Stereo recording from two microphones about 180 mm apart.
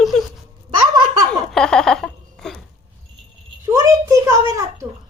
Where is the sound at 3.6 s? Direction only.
20° right (ahead or behind).